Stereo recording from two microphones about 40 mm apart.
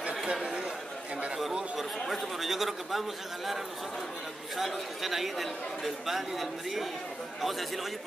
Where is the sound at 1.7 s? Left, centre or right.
Centre.